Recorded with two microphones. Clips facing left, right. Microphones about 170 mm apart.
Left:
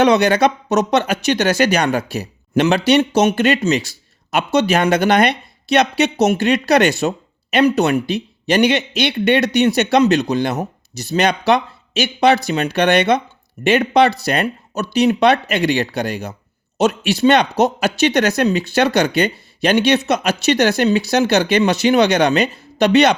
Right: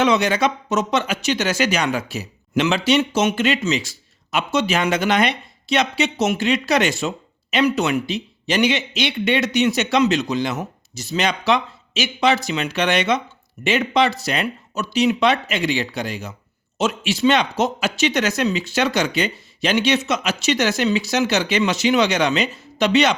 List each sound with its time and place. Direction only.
0.0 s speech: 65° left (ahead or behind)